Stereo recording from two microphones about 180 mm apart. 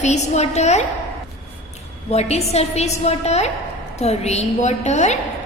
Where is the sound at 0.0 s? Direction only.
40° left (ahead or behind).